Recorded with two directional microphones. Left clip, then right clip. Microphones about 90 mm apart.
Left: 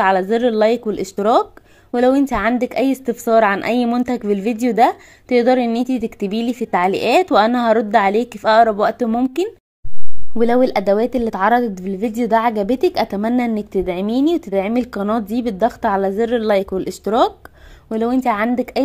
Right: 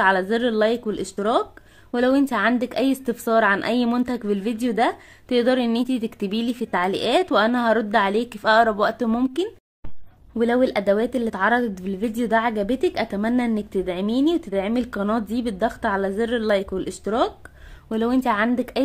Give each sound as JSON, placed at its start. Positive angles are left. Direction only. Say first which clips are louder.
{"t": 0.0, "sound": "speech", "louder": "left 4 dB", "side_deg": 30}
{"t": 1.9, "sound": "a woman's voice", "louder": "left 5 dB", "side_deg": 25}
{"t": 5.3, "sound": "a woman's voice", "louder": "left 5 dB", "side_deg": 25}
{"t": 10.4, "sound": "speech", "louder": "left 5 dB", "side_deg": 30}
{"t": 13.4, "sound": "speech", "louder": "left 5 dB", "side_deg": 30}
{"t": 17.8, "sound": "a woman's voice", "louder": "left 4 dB", "side_deg": 20}